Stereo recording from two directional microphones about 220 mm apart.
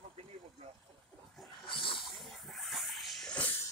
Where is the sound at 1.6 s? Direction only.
25° left (ahead or behind).